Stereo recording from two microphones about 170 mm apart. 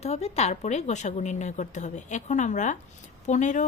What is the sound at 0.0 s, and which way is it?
Speech, 40° left (ahead or behind).